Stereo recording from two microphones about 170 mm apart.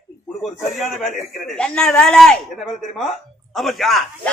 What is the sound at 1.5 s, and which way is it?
Speech, 5° left (ahead or behind).